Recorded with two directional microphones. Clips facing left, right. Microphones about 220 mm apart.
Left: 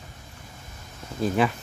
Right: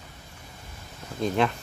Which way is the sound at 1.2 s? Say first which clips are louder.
Left 1 dB; 5° left (ahead or behind).